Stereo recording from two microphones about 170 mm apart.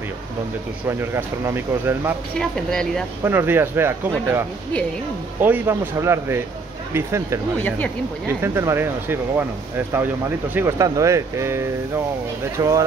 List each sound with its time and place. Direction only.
0.8 s speech: 15° right (ahead or behind)
2.3 s speech: 5° left (ahead or behind)
3.3 s speech: 15° right (ahead or behind)
5.4 s speech: 15° right (ahead or behind)
7.5 s speech: 10° left (ahead or behind)
8.4 s speech: 15° right (ahead or behind)